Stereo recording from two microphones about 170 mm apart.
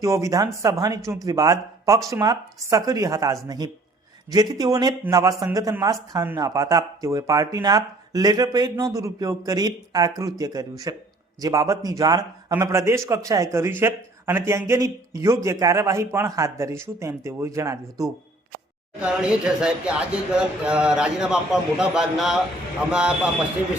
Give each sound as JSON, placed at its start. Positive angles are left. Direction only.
{"t": 0.0, "sound": "a man's voice", "side_deg": -20}
{"t": 18.9, "sound": "speech", "side_deg": -5}